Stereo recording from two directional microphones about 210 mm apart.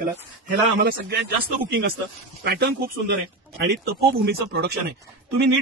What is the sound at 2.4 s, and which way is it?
Speech, 50° right (ahead or behind).